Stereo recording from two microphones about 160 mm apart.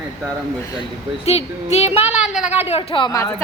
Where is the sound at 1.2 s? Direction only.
40° left (ahead or behind).